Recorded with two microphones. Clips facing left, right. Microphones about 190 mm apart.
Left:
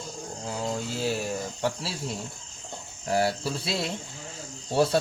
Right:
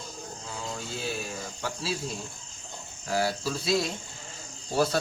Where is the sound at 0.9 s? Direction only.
90° left.